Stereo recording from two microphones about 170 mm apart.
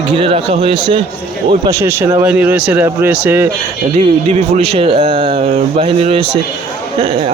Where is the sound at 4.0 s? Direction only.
35° right (ahead or behind).